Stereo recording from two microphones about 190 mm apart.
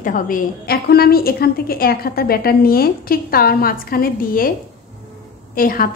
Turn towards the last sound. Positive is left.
turn(degrees=50)  # may be behind; listen again after turning